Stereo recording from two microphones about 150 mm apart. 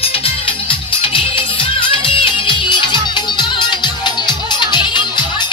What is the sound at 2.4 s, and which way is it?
Music, 30° left (ahead or behind).